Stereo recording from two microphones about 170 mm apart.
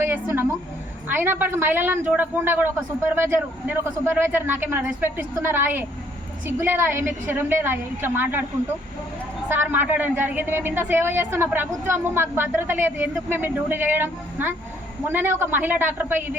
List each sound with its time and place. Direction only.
0.0 s a woman's voice: 15° right (ahead or behind)
9.5 s a woman's voice: 10° right (ahead or behind)